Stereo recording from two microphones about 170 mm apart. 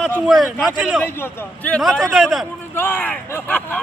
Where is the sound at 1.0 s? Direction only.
15° left (ahead or behind).